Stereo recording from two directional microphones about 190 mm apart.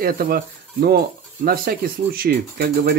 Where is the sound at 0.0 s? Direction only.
50° right (ahead or behind).